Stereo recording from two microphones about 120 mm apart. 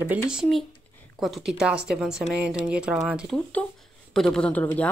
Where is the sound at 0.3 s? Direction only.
Centre (ahead or behind).